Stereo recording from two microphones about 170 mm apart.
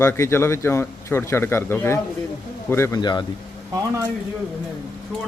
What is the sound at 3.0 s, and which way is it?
Speech, 25° left (ahead or behind).